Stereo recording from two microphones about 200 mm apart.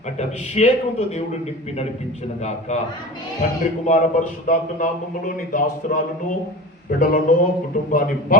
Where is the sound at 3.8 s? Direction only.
35° left (ahead or behind).